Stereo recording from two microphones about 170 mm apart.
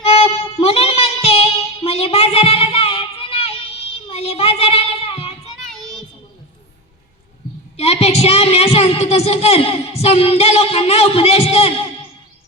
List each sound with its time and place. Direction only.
0.0 s music: 35° left (ahead or behind)
4.1 s child singing: 35° left (ahead or behind)
7.8 s a sound: 35° left (ahead or behind)